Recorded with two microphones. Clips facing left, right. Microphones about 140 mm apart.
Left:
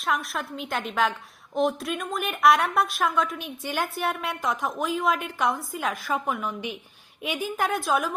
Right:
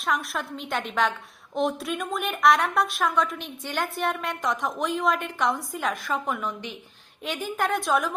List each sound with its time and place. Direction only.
0.0 s a woman's voice: centre (ahead or behind)